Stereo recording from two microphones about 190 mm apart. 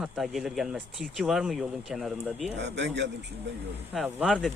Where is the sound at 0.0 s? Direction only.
Centre (ahead or behind).